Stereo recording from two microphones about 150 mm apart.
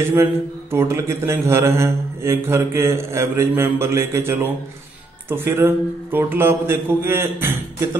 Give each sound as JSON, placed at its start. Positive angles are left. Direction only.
{"t": 0.1, "sound": "a man's voice", "side_deg": -15}